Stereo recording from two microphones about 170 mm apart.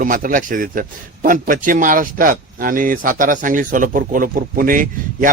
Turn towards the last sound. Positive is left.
turn(degrees=-55)  # may be behind; listen again after turning